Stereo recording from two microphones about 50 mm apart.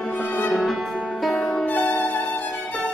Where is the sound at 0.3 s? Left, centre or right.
Left.